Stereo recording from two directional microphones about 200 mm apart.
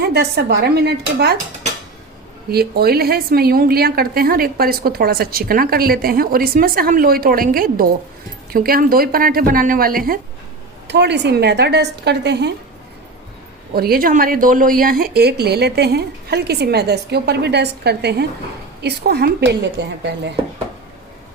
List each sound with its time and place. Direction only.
0.1 s a woman's voice: 55° right (ahead or behind)
2.5 s a woman's voice: 50° right (ahead or behind)
10.8 s a woman's voice: 60° right (ahead or behind)
13.7 s a woman's voice: 50° right (ahead or behind)